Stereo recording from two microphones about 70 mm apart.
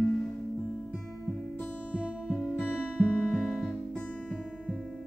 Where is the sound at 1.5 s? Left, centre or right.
Left.